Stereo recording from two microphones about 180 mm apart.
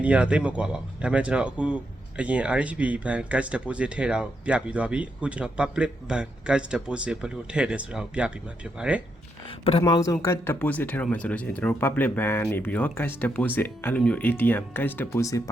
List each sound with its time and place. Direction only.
0.0 s speech: 5° right (ahead or behind)
9.6 s speech: 25° left (ahead or behind)